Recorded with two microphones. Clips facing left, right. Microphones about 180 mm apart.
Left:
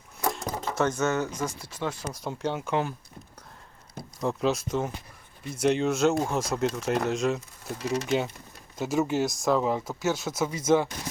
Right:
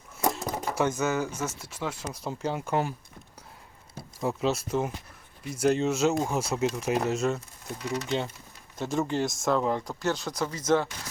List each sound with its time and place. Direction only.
0.3 s speech: centre (ahead or behind)
4.2 s speech: 5° right (ahead or behind)
7.8 s speech: 25° left (ahead or behind)
8.8 s speech: 5° left (ahead or behind)